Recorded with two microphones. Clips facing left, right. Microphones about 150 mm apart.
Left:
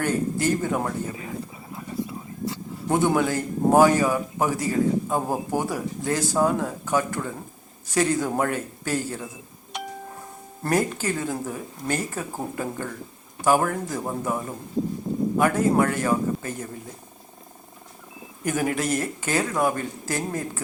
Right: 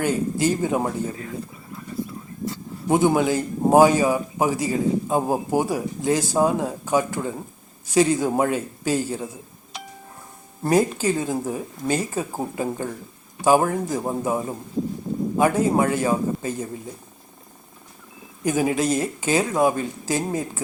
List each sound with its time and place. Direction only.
0.0 s a man's voice: 15° right (ahead or behind)
2.9 s a man's voice: 15° right (ahead or behind)
10.6 s a man's voice: 15° right (ahead or behind)
18.4 s a man's voice: 15° right (ahead or behind)